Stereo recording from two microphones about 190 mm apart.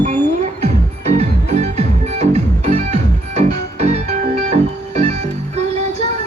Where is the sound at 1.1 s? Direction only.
35° right (ahead or behind).